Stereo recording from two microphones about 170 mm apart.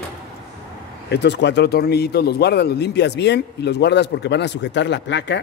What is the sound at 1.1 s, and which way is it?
Speech, 85° left.